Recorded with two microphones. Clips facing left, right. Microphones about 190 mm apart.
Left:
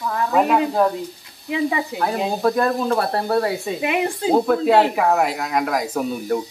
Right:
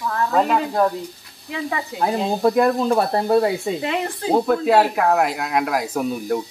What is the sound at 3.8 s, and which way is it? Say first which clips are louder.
Speech: left 2 dB; 15° left (ahead or behind).